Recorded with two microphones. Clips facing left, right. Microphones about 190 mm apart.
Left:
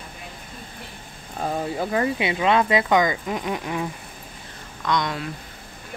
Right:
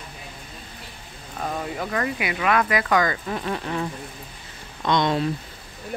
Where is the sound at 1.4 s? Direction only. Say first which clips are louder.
Left 3 dB; 30° left (ahead or behind); by 3.8 s 15° left (ahead or behind).